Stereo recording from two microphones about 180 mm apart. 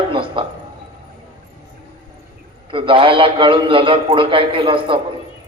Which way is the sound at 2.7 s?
30° right (ahead or behind).